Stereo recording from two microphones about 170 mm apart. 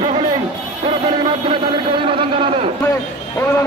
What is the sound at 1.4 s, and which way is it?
A man's voice, 30° right (ahead or behind).